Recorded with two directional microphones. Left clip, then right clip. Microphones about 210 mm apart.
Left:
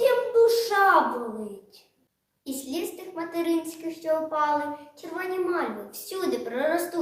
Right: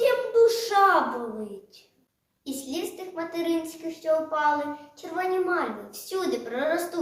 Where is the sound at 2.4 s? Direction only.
Centre (ahead or behind).